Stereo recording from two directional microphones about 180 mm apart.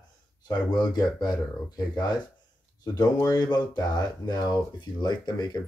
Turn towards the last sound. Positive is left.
turn(degrees=25)  # may be behind; listen again after turning